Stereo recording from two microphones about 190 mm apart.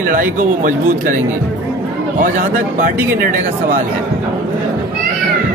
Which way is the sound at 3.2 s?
45° right (ahead or behind).